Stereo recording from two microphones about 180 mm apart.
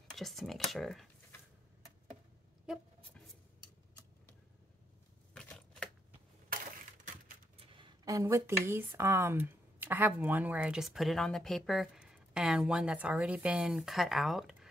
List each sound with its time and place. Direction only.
0.1 s speech: centre (ahead or behind)
5.3 s a sound: 5° left (ahead or behind)
6.5 s crushing: 50° right (ahead or behind)
7.6 s speech: 30° right (ahead or behind); by 14.7 s centre (ahead or behind)